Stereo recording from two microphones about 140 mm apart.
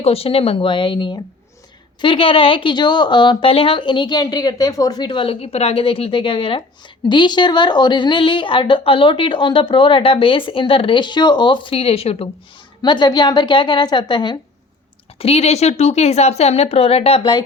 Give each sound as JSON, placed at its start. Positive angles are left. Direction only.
{"t": 0.0, "sound": "speech", "side_deg": 45}
{"t": 12.8, "sound": "speech", "side_deg": 35}
{"t": 15.2, "sound": "a woman's voice", "side_deg": 45}